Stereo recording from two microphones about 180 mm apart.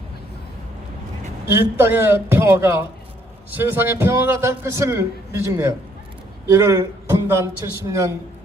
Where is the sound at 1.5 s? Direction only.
15° right (ahead or behind).